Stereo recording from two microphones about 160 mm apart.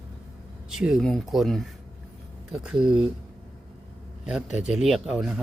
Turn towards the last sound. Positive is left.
turn(degrees=-5)  # may be behind; listen again after turning